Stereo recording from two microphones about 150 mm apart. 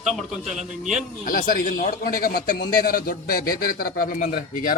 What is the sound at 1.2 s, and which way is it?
A man's voice, 70° left (ahead or behind).